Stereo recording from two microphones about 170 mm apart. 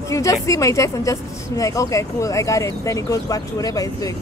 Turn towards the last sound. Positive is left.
turn(degrees=20)  # may be behind; listen again after turning